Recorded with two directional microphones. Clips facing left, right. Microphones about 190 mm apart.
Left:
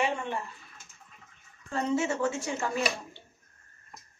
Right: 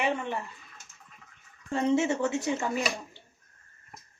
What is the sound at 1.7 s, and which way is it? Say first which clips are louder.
Speech: right 3 dB; 25° right (ahead or behind).